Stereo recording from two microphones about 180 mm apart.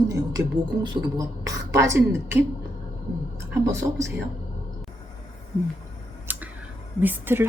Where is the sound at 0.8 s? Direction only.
20° right (ahead or behind).